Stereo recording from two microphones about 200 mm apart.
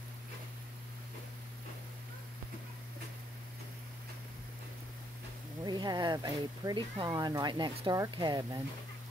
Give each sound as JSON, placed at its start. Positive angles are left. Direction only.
{"t": 5.7, "sound": "speech", "side_deg": -20}